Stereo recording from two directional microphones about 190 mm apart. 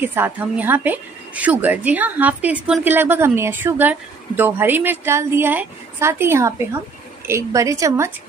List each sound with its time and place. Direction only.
0.0 s a woman's voice: 10° right (ahead or behind)